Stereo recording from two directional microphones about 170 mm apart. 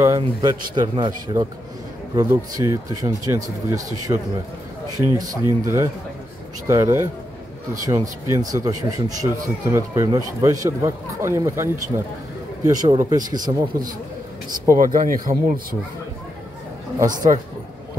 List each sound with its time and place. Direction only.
0.2 s speech: 25° right (ahead or behind)
14.8 s speech: 55° right (ahead or behind)